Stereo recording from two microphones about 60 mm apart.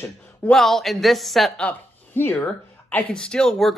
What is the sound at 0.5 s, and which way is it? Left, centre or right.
Speech, centre.